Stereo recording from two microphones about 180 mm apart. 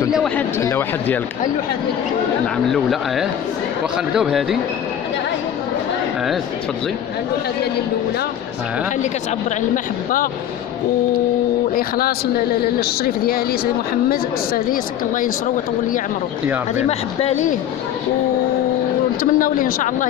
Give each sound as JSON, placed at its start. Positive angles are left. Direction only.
{"t": 0.1, "sound": "speech", "side_deg": 0}
{"t": 0.6, "sound": "speech", "side_deg": 15}
{"t": 2.7, "sound": "speech", "side_deg": 0}
{"t": 11.7, "sound": "speech", "side_deg": 55}
{"t": 17.2, "sound": "speech", "side_deg": 40}
{"t": 19.3, "sound": "speech", "side_deg": 50}